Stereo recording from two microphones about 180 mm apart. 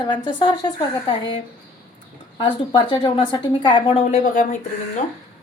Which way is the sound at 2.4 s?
25° left (ahead or behind).